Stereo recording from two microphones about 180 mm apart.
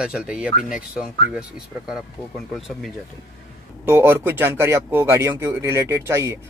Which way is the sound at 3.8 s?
15° right (ahead or behind).